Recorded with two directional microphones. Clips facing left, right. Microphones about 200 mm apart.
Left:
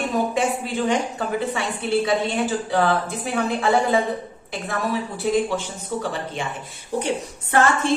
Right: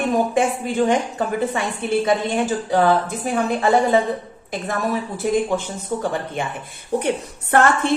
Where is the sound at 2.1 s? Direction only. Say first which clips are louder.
Right 2 dB; 45° right (ahead or behind).